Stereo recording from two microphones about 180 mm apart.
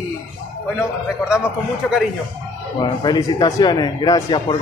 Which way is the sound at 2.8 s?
25° left (ahead or behind).